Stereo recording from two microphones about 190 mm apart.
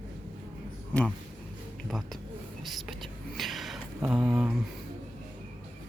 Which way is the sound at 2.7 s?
Centre (ahead or behind).